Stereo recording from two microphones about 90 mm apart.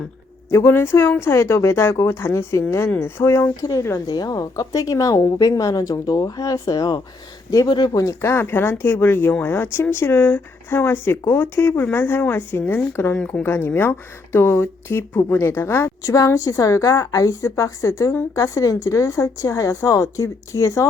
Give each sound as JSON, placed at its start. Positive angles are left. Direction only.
{"t": 0.5, "sound": "a woman's voice", "side_deg": 25}
{"t": 7.9, "sound": "speech", "side_deg": 30}
{"t": 13.1, "sound": "speech", "side_deg": 10}
{"t": 13.4, "sound": "a woman's voice", "side_deg": 25}